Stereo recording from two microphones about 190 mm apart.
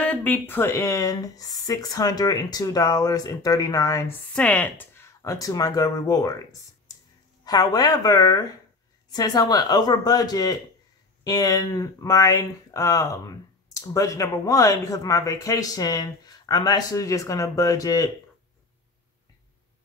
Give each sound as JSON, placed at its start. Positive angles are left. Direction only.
{"t": 0.0, "sound": "speech", "side_deg": 10}
{"t": 7.4, "sound": "speech", "side_deg": 20}